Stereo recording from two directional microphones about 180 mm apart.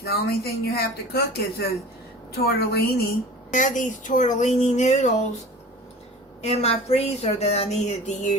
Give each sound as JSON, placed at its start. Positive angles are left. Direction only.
{"t": 0.0, "sound": "speech", "side_deg": 60}
{"t": 3.5, "sound": "speech", "side_deg": 45}
{"t": 6.4, "sound": "speech", "side_deg": 35}